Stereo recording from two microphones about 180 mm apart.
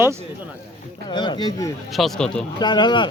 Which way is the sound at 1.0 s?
25° left (ahead or behind).